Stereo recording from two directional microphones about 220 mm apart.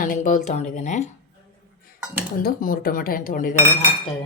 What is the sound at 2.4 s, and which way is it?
Speech, 40° left (ahead or behind).